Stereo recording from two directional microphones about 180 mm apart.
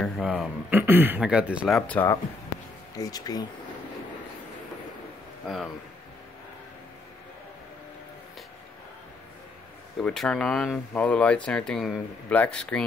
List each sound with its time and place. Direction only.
0.0 s speech: 5° right (ahead or behind)
1.8 s speech: 10° left (ahead or behind)
9.9 s speech: 5° left (ahead or behind)